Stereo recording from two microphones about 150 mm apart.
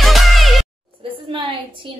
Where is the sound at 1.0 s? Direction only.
35° right (ahead or behind).